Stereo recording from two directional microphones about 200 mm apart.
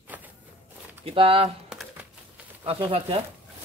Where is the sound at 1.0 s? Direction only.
30° right (ahead or behind).